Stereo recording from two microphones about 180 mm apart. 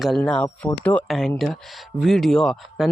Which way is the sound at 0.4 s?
15° left (ahead or behind).